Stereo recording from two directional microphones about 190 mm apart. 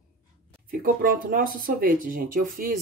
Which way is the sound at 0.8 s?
45° right (ahead or behind).